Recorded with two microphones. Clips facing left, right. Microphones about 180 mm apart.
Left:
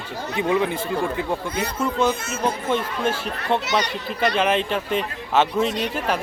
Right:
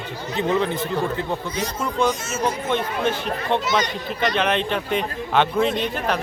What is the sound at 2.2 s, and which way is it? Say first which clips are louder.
Speech: right 2 dB; 60° left (ahead or behind).